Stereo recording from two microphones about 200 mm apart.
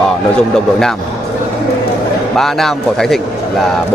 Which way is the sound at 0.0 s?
5° left (ahead or behind).